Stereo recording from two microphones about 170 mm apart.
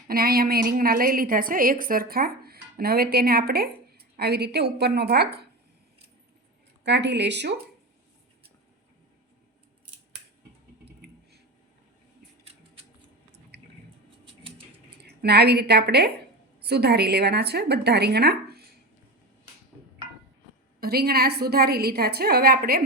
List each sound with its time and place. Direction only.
0.1 s a woman's voice: 60° right (ahead or behind)
6.8 s speech: 90° right
15.0 s a woman's voice: 70° right (ahead or behind)
20.8 s a woman's voice: 65° right (ahead or behind)